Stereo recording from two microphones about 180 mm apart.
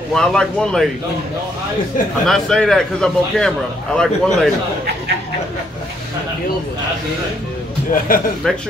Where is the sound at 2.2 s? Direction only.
5° left (ahead or behind).